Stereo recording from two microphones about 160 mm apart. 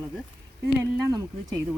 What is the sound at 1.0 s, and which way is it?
Speech, 25° right (ahead or behind).